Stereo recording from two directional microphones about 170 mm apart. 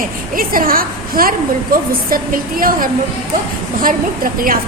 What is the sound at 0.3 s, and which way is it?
A woman's voice, 55° right (ahead or behind).